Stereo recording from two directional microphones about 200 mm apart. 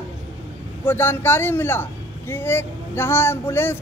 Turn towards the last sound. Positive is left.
turn(degrees=10)  # may be behind; listen again after turning